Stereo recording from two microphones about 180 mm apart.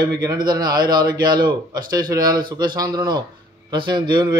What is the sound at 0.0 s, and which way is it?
Speech, 20° right (ahead or behind).